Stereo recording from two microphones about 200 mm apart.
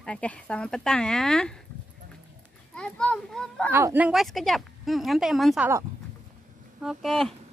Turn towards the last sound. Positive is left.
turn(degrees=0)  # may be behind; listen again after turning